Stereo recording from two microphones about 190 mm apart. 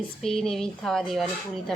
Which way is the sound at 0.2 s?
5° left (ahead or behind).